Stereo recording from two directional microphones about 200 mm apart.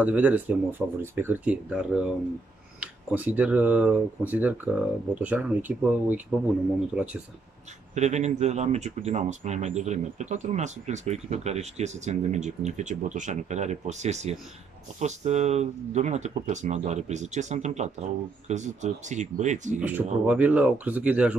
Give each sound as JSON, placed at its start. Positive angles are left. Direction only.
{"t": 0.0, "sound": "speech", "side_deg": -5}
{"t": 7.9, "sound": "speech", "side_deg": -35}
{"t": 19.8, "sound": "speech", "side_deg": -5}